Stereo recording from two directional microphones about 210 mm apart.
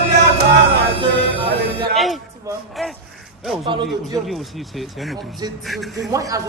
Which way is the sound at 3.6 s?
25° right (ahead or behind).